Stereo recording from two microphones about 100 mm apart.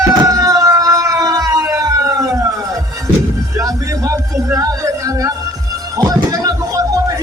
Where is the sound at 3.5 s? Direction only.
35° right (ahead or behind).